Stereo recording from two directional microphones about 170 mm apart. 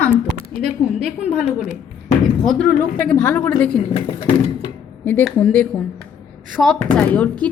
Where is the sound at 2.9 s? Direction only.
10° left (ahead or behind).